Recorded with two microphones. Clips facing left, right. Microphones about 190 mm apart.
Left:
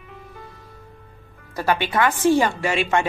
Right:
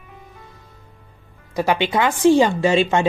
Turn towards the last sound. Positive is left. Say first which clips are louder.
# right 5 dB
turn(degrees=-25)  # may be behind; listen again after turning